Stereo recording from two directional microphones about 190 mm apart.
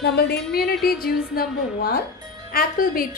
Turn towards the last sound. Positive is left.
turn(degrees=50)  # may be behind; listen again after turning